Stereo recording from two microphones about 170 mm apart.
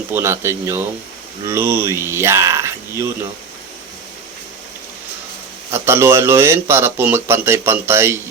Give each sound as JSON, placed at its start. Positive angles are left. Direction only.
{"t": 0.1, "sound": "a man's voice", "side_deg": -15}
{"t": 5.7, "sound": "a man's voice", "side_deg": -15}